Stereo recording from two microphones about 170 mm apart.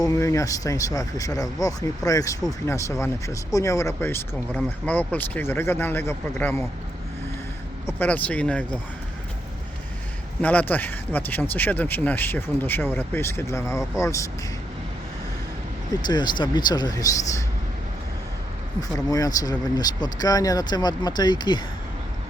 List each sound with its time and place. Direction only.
0.0 s speech: 20° left (ahead or behind)
7.9 s speech: 10° left (ahead or behind)
10.4 s speech: 10° left (ahead or behind)
16.0 s speech: 25° left (ahead or behind)
18.8 s speech: 20° left (ahead or behind)